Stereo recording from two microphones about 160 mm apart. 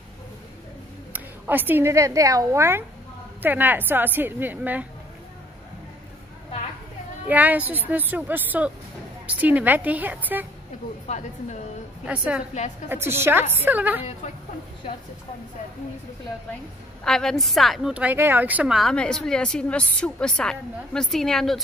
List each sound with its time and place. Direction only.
1.1 s a woman's voice: 10° right (ahead or behind)
7.2 s a woman's voice: 10° right (ahead or behind)
12.0 s a woman's voice: 5° right (ahead or behind)
17.0 s a woman's voice: 5° left (ahead or behind)